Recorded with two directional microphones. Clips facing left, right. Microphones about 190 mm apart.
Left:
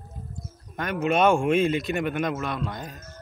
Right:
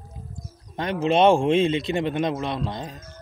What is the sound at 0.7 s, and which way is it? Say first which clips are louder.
Speech: right 3 dB; 25° right (ahead or behind).